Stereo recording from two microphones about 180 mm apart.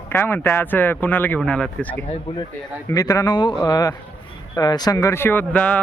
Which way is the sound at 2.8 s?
20° left (ahead or behind).